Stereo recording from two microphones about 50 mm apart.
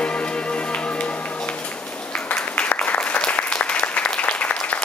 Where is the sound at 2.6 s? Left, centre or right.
Left.